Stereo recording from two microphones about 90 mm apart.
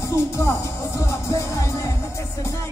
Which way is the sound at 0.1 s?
35° left (ahead or behind).